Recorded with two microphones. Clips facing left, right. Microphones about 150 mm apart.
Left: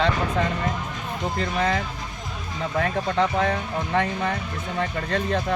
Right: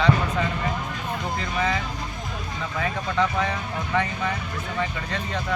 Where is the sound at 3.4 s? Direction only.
45° left (ahead or behind).